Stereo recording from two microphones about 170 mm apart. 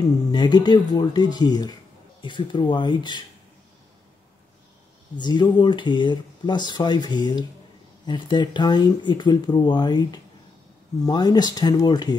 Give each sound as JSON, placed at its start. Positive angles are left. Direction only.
{"t": 0.3, "sound": "speech", "side_deg": 25}
{"t": 5.1, "sound": "speech", "side_deg": 25}